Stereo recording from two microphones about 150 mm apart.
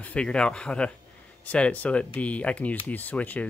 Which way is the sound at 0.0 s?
5° left (ahead or behind).